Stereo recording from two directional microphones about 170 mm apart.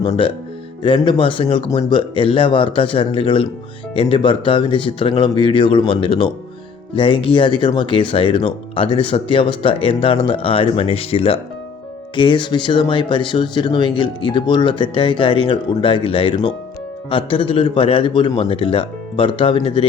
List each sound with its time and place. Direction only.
0.0 s speech: 30° left (ahead or behind)